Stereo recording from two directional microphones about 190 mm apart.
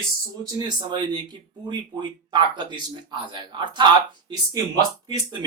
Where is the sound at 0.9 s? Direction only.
25° right (ahead or behind).